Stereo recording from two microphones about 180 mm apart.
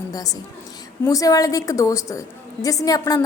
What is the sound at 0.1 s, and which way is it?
A woman's voice, 20° left (ahead or behind).